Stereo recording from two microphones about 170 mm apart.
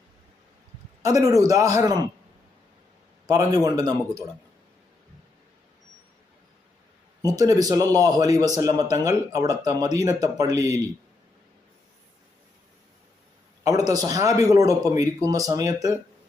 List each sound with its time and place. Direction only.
1.0 s a man's voice: 20° right (ahead or behind)
3.2 s a man's voice: 20° right (ahead or behind)
7.2 s a man's voice: 20° right (ahead or behind)
13.7 s a man's voice: 20° right (ahead or behind)